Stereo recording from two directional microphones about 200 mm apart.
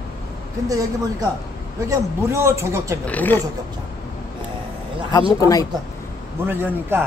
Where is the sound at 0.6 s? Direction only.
15° right (ahead or behind).